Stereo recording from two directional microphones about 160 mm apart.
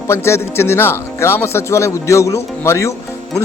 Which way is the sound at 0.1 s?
15° left (ahead or behind).